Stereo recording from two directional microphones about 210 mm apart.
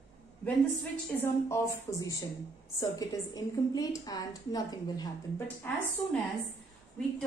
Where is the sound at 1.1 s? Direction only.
15° left (ahead or behind).